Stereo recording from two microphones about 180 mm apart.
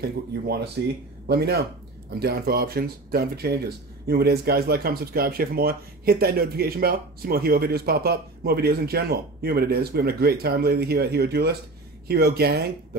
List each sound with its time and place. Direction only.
1.2 s speech: 60° right (ahead or behind)